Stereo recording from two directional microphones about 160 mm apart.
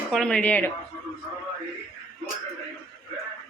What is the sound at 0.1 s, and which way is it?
Speech, 5° left (ahead or behind).